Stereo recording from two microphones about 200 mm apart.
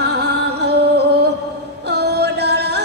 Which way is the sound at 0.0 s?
55° right (ahead or behind).